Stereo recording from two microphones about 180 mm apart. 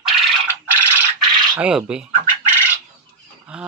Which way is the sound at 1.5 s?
5° right (ahead or behind).